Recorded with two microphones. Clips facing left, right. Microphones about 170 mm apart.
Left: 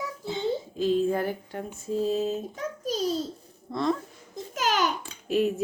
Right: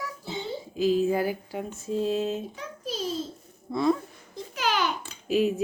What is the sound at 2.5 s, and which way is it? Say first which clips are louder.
Speech: left 4 dB; 45° left (ahead or behind).